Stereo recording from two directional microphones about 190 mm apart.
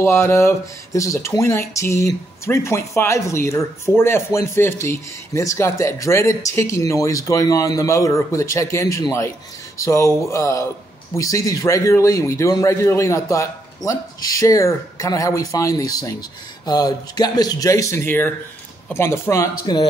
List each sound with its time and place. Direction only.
0.0 s speech: 15° left (ahead or behind)